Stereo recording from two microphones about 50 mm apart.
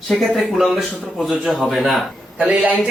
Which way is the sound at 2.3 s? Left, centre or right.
Centre.